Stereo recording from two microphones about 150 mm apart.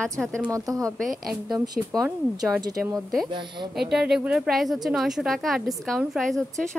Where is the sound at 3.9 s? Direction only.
5° right (ahead or behind).